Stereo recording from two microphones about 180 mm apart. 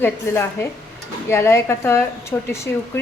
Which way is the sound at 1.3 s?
15° left (ahead or behind).